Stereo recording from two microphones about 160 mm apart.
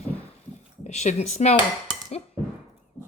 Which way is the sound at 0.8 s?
45° left (ahead or behind).